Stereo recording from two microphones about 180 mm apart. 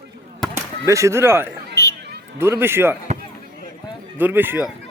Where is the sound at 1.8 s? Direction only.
15° left (ahead or behind).